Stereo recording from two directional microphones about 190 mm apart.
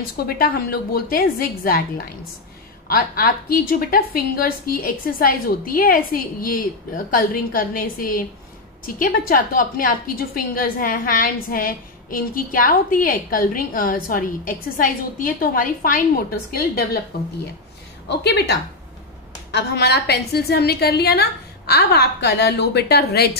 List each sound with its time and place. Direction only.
0.3 s a woman's voice: 50° left (ahead or behind)
18.0 s a woman's voice: 60° left (ahead or behind)